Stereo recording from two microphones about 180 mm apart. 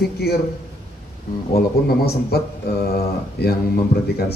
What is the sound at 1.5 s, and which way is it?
Speech, 60° left (ahead or behind).